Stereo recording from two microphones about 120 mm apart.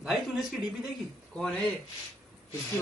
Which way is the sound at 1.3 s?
5° left (ahead or behind).